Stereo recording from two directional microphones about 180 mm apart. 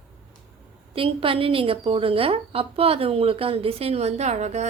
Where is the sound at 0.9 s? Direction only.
30° right (ahead or behind).